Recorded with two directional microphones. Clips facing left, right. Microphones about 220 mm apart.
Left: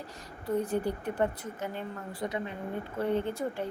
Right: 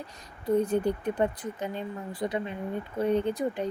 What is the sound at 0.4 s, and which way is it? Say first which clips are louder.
Speech: right 5 dB; 20° right (ahead or behind).